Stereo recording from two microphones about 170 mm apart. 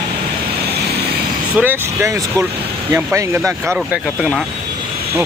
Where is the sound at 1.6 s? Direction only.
15° right (ahead or behind).